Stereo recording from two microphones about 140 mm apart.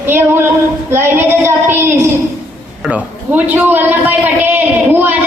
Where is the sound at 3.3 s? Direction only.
10° right (ahead or behind).